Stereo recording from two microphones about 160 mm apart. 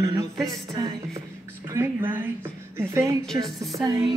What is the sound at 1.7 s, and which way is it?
Speech, 15° right (ahead or behind).